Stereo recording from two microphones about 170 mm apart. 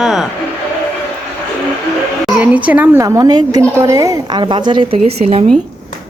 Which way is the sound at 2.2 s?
5° right (ahead or behind).